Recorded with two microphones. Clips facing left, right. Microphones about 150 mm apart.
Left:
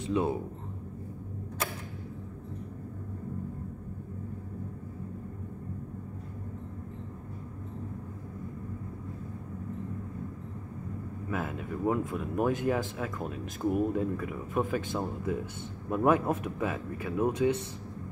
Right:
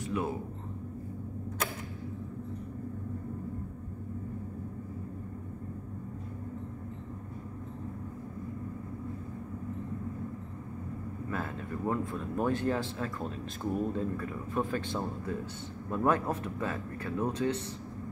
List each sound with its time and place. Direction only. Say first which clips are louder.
0.0 s speech: left 4 dB; 25° left (ahead or behind)
11.2 s speech: left 3 dB; 10° left (ahead or behind)